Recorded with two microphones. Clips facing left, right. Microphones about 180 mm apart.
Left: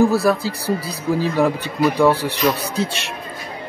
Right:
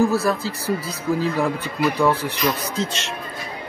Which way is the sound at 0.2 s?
15° left (ahead or behind).